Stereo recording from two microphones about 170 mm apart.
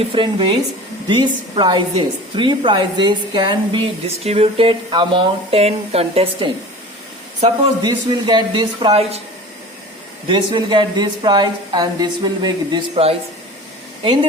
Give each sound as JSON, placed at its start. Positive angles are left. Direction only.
{"t": 0.1, "sound": "a woman's voice", "side_deg": -30}
{"t": 7.8, "sound": "a woman's voice", "side_deg": -25}
{"t": 10.2, "sound": "a woman's voice", "side_deg": -30}